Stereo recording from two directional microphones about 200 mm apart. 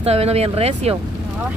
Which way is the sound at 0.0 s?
30° right (ahead or behind).